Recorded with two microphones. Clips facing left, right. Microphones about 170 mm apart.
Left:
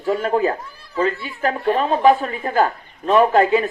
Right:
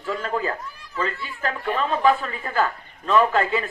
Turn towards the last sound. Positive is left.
turn(degrees=40)  # may be behind; listen again after turning